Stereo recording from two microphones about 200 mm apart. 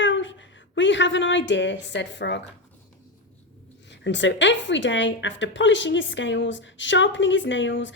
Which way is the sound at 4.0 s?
65° left (ahead or behind).